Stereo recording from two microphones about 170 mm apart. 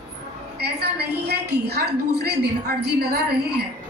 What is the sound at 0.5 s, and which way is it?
A woman's voice, 75° right (ahead or behind).